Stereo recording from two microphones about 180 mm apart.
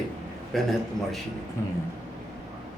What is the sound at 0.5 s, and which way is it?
Speech, centre (ahead or behind).